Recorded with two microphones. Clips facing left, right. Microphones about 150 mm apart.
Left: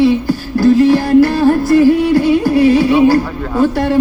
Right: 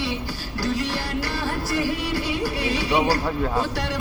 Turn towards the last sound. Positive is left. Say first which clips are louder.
# left 11 dB
turn(degrees=50)  # may be behind; listen again after turning